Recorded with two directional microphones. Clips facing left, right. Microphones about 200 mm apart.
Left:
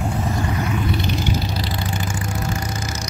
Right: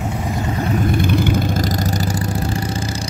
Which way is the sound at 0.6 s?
35° right (ahead or behind).